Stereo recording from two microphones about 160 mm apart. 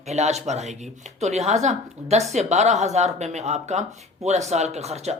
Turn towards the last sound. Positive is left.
turn(degrees=-45)  # may be behind; listen again after turning